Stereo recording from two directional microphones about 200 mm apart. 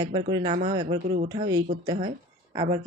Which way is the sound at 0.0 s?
20° right (ahead or behind).